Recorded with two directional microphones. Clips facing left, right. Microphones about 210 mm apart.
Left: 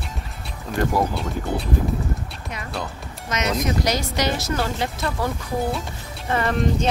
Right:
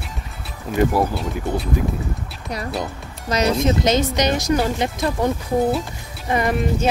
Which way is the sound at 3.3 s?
30° right (ahead or behind).